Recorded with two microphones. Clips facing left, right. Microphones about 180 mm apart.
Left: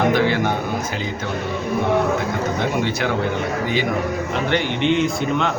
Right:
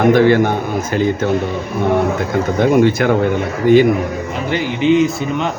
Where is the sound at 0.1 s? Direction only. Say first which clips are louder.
Right 8 dB; 50° right (ahead or behind).